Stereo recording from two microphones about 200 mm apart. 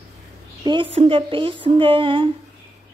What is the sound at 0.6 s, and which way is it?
Speech, 25° right (ahead or behind).